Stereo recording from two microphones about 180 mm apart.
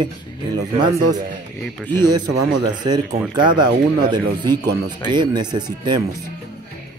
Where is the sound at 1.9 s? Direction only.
20° right (ahead or behind).